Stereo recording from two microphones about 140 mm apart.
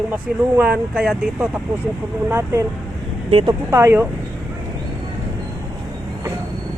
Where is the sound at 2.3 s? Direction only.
15° right (ahead or behind).